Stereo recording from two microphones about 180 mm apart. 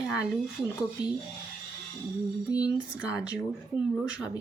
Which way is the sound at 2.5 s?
20° left (ahead or behind).